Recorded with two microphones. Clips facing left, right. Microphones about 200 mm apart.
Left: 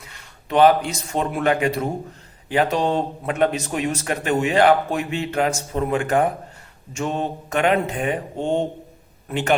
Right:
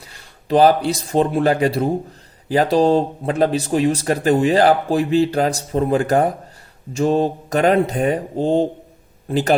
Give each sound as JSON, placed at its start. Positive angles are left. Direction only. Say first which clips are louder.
{"t": 0.0, "sound": "speech", "louder": "right 1 dB", "side_deg": -35}